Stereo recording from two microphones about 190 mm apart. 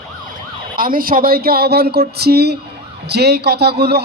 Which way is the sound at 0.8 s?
50° right (ahead or behind).